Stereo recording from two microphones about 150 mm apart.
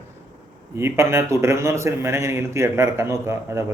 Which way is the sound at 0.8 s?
15° right (ahead or behind).